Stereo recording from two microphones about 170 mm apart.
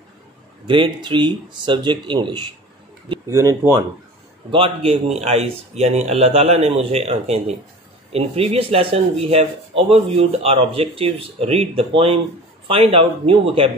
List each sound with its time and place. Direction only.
0.7 s speech: 30° right (ahead or behind)
4.5 s speech: 30° right (ahead or behind)